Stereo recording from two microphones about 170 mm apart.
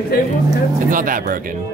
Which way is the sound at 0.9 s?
55° right (ahead or behind).